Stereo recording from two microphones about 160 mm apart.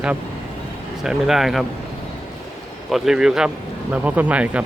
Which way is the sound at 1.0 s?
Centre (ahead or behind).